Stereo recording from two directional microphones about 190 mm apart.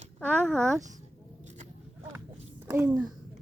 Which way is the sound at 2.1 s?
10° right (ahead or behind).